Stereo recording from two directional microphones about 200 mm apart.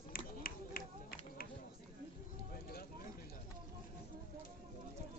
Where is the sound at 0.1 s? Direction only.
45° left (ahead or behind).